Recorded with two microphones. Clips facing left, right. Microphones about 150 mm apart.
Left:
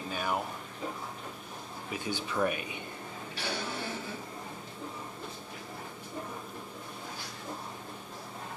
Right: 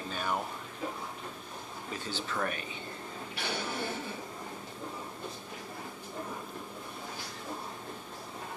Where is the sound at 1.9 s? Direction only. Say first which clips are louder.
Left 2 dB; 15° left (ahead or behind).